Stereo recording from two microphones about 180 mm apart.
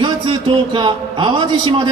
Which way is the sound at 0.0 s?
25° right (ahead or behind).